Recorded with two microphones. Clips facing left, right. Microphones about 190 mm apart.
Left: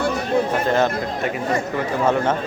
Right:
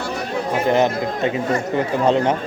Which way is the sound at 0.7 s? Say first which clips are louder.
Right 2 dB; 15° right (ahead or behind).